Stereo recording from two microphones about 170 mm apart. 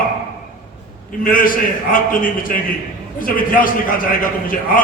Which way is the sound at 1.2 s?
55° left (ahead or behind).